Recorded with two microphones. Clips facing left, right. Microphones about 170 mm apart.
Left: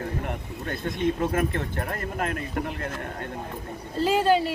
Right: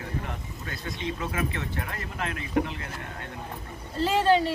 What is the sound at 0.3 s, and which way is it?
Speech, 55° left (ahead or behind).